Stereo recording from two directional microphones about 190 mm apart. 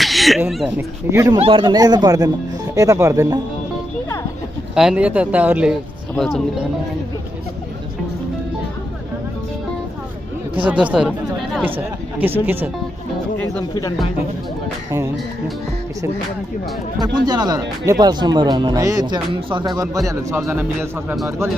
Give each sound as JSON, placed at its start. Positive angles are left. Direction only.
{"t": 0.0, "sound": "a sound", "side_deg": 0}
{"t": 0.7, "sound": "speech", "side_deg": -15}
{"t": 1.4, "sound": "speech", "side_deg": -25}
{"t": 4.7, "sound": "speech", "side_deg": -5}
{"t": 10.7, "sound": "speech", "side_deg": -5}
{"t": 13.4, "sound": "speech", "side_deg": 20}
{"t": 17.0, "sound": "speech", "side_deg": -20}